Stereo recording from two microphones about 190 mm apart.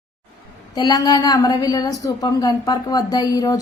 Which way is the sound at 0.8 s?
20° left (ahead or behind).